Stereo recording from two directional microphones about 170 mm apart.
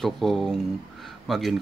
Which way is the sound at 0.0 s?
Centre (ahead or behind).